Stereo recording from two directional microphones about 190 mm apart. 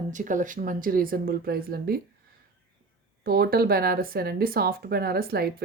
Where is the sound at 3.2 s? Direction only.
55° right (ahead or behind).